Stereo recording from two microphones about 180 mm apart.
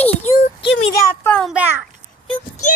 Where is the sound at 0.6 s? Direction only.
20° left (ahead or behind).